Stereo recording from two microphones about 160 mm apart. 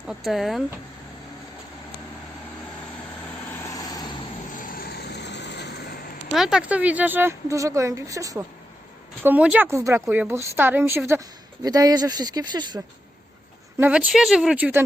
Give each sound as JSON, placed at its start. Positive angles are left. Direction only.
{"t": 0.3, "sound": "speech", "side_deg": 0}
{"t": 3.7, "sound": "vehicle", "side_deg": 20}
{"t": 4.5, "sound": "vehicle", "side_deg": 60}
{"t": 6.3, "sound": "a woman's voice", "side_deg": -5}
{"t": 9.2, "sound": "a woman's voice", "side_deg": -10}
{"t": 13.7, "sound": "a woman's voice", "side_deg": -10}